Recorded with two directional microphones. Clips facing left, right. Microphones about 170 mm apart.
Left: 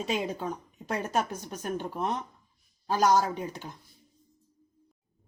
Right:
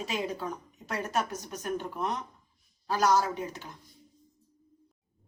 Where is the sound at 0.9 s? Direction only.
30° left (ahead or behind).